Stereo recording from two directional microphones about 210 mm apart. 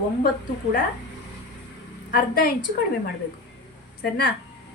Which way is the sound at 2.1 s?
45° left (ahead or behind).